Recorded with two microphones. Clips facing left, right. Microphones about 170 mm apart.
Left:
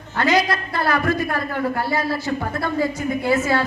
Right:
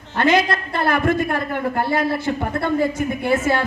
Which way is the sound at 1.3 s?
20° right (ahead or behind).